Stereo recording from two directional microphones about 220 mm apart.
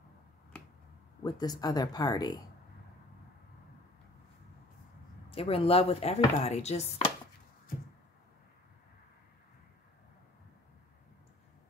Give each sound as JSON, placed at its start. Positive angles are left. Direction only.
{"t": 1.2, "sound": "speech", "side_deg": 20}
{"t": 5.3, "sound": "chopping", "side_deg": 25}